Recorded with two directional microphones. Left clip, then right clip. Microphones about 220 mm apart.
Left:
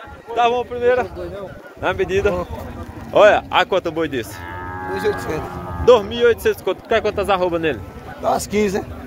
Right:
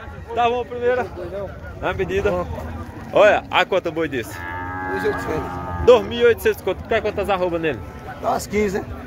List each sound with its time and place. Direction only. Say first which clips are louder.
0.3 s speech: left 2 dB; 15° left (ahead or behind)
4.6 s moo: even; 30° right (ahead or behind)
4.9 s a man's voice: left 2 dB; 50° left (ahead or behind)
5.9 s speech: left 1 dB; centre (ahead or behind)
8.2 s a man's voice: left 2 dB; 45° left (ahead or behind)